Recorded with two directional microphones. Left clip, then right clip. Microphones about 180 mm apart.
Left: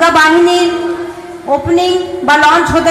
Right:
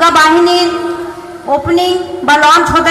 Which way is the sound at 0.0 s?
35° left (ahead or behind).